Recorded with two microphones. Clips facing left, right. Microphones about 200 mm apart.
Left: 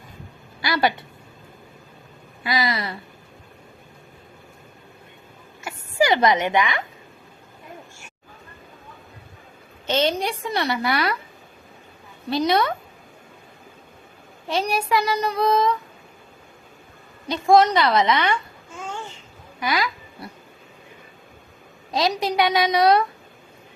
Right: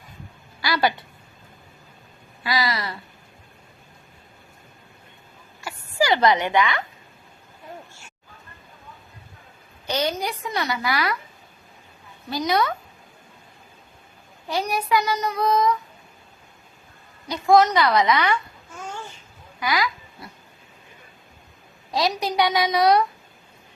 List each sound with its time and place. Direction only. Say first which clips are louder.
0.6 s a woman's voice: left 1 dB; 25° left (ahead or behind)
2.4 s child singing: left 1 dB; 20° left (ahead or behind)
5.6 s a child's voice: left 2 dB; 20° left (ahead or behind)
9.8 s child singing: left 3 dB; 25° left (ahead or behind)
12.3 s child singing: left 2 dB; 30° left (ahead or behind)
14.4 s child singing: left 2 dB; 30° left (ahead or behind)
17.2 s child singing: left 1 dB; 25° left (ahead or behind)
19.5 s a sound: even; 25° left (ahead or behind)
21.9 s child singing: left 1 dB; 20° left (ahead or behind)